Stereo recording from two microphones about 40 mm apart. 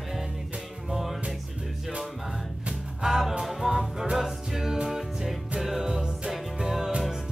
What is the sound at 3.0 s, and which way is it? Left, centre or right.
Music, centre.